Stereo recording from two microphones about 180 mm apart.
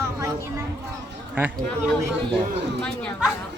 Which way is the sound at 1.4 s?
10° right (ahead or behind).